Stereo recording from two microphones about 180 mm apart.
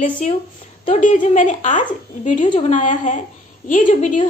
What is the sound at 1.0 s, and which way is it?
A woman's voice, 45° left (ahead or behind).